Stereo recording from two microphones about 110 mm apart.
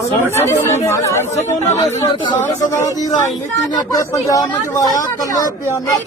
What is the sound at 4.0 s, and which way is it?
Speech, 30° left (ahead or behind).